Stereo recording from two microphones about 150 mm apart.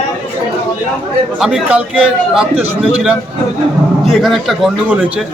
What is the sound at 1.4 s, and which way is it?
A man's voice, 5° right (ahead or behind).